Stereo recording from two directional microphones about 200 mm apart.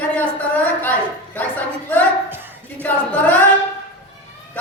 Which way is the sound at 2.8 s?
10° left (ahead or behind).